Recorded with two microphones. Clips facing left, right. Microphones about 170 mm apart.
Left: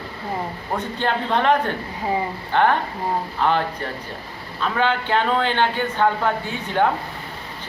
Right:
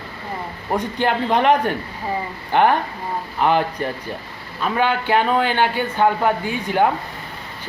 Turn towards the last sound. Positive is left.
turn(degrees=-10)  # may be behind; listen again after turning